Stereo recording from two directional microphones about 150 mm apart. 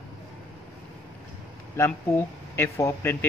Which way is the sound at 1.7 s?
20° left (ahead or behind).